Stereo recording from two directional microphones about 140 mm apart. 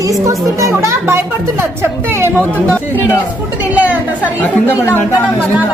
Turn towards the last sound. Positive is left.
turn(degrees=15)  # may be behind; listen again after turning